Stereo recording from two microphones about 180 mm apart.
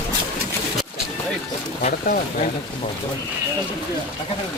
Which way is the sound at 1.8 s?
50° left (ahead or behind).